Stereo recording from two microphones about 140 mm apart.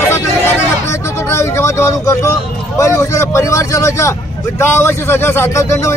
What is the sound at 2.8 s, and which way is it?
Speech, 20° left (ahead or behind).